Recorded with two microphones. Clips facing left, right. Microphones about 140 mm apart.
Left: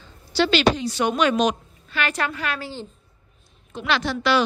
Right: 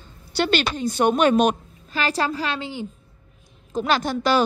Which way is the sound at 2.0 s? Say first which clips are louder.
Right 2 dB; 35° right (ahead or behind).